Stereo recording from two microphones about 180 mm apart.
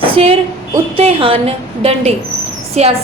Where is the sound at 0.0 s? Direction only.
30° right (ahead or behind).